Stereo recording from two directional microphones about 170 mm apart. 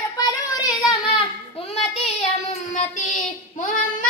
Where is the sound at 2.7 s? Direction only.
50° left (ahead or behind).